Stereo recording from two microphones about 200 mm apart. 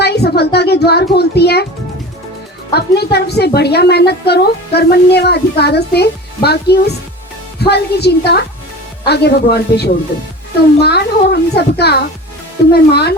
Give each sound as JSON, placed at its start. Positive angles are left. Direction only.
{"t": 0.0, "sound": "a woman's voice", "side_deg": 55}
{"t": 2.7, "sound": "a woman's voice", "side_deg": 55}